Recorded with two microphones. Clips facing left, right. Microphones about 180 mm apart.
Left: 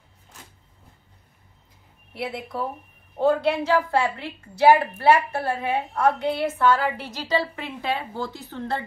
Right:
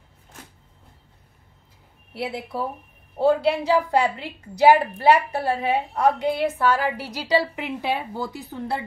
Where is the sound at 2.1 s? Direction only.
5° right (ahead or behind).